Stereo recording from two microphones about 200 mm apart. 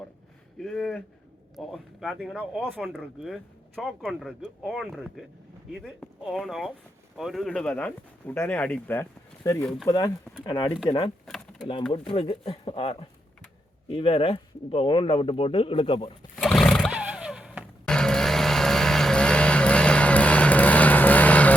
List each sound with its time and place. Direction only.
0.6 s speech: 5° left (ahead or behind); by 16.1 s 25° left (ahead or behind)
16.3 s music: centre (ahead or behind)